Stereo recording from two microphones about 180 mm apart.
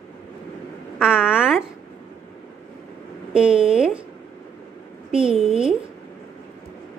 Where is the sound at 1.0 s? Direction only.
5° right (ahead or behind).